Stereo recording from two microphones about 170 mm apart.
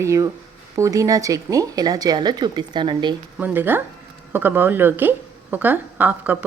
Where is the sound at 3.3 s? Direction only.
10° right (ahead or behind).